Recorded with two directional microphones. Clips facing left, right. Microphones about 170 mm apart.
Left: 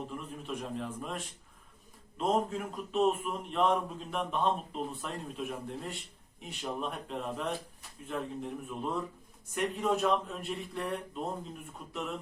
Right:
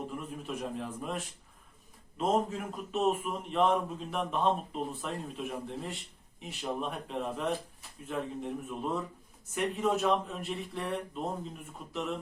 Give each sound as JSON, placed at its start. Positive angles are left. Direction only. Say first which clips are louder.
{"t": 0.1, "sound": "a man's voice", "louder": "right 1 dB", "side_deg": -5}